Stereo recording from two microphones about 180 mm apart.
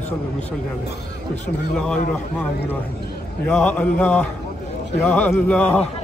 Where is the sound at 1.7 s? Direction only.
5° left (ahead or behind).